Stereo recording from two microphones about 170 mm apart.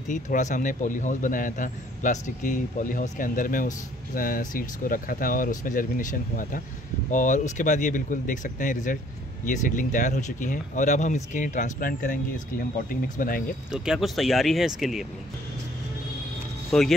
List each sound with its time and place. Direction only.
0.1 s a man's voice: 45° left (ahead or behind)
13.7 s speech: 5° right (ahead or behind)
16.7 s speech: 5° left (ahead or behind)